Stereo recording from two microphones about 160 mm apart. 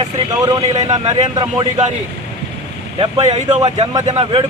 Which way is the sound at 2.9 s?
40° right (ahead or behind).